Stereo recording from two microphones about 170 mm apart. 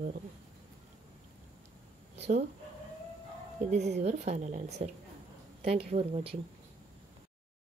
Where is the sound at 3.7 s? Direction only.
40° right (ahead or behind).